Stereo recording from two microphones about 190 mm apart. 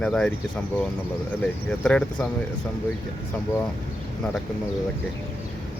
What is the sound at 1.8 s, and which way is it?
Speech, 5° left (ahead or behind).